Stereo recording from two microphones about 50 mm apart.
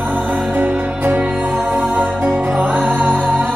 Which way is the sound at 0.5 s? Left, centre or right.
Right.